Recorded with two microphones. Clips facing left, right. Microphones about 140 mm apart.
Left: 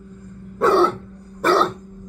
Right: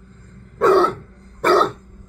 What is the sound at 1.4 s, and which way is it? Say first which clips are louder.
Dog: right 2 dB; centre (ahead or behind).